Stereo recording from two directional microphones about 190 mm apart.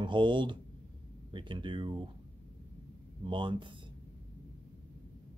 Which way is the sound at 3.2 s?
25° right (ahead or behind).